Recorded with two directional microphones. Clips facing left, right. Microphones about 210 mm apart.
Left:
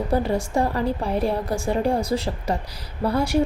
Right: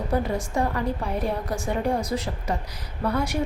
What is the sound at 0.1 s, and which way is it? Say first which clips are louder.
A woman's voice: left 3 dB; 30° left (ahead or behind).